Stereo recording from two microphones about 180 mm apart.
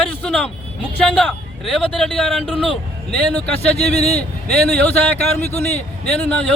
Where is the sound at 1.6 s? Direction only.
Centre (ahead or behind).